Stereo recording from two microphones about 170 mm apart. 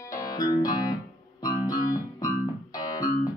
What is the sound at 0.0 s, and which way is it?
Music, 20° left (ahead or behind).